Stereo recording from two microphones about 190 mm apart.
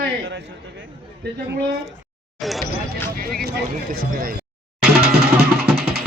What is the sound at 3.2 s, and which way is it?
Speech, 50° right (ahead or behind).